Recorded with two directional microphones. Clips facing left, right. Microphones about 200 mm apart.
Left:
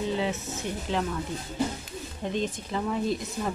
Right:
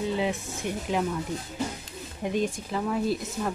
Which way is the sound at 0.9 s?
5° right (ahead or behind).